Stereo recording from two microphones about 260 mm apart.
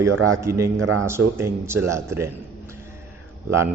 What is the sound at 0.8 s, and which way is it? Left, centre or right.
Speech, right.